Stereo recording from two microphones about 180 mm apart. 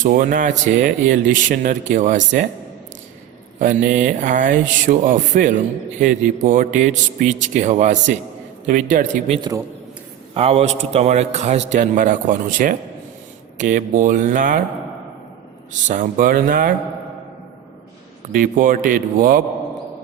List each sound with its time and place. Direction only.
0.0 s speech: 50° right (ahead or behind)
3.6 s a man's voice: 45° right (ahead or behind)
15.9 s speech: 45° right (ahead or behind)
18.3 s speech: 50° right (ahead or behind)